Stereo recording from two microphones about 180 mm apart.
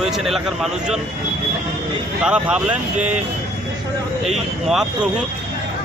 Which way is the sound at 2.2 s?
5° right (ahead or behind).